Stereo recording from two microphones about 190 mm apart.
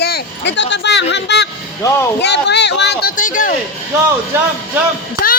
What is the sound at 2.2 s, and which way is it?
Speech, 65° left (ahead or behind).